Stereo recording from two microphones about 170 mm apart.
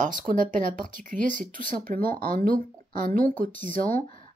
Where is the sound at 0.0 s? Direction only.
50° right (ahead or behind).